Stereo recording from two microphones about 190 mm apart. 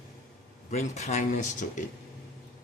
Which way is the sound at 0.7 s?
35° left (ahead or behind).